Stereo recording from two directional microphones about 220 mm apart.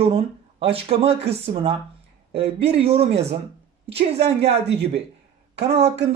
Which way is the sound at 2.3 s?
25° right (ahead or behind).